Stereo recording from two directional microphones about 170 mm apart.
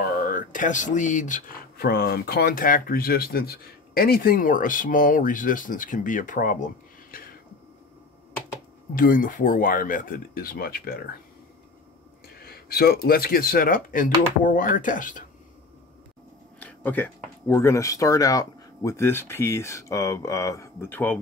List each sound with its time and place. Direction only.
0.2 s speech: 55° left (ahead or behind)
1.8 s speech: 65° left (ahead or behind)
8.9 s speech: 55° left (ahead or behind)
12.4 s speech: 60° left (ahead or behind)
16.5 s speech: 10° left (ahead or behind)